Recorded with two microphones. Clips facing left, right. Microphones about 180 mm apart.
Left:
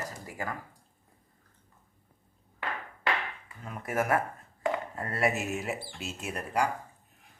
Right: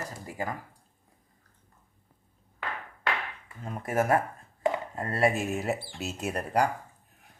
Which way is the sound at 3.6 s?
30° right (ahead or behind).